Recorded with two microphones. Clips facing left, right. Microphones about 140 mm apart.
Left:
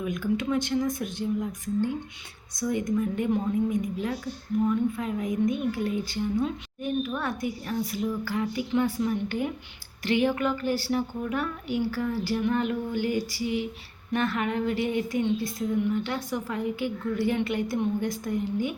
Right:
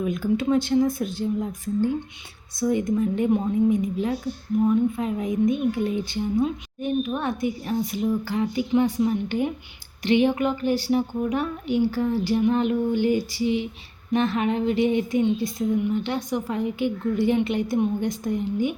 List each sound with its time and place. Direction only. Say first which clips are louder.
0.0 s a woman's voice: right 4 dB; 30° right (ahead or behind)